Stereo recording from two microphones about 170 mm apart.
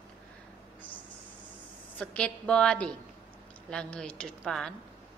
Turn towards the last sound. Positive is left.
turn(degrees=5)  # may be behind; listen again after turning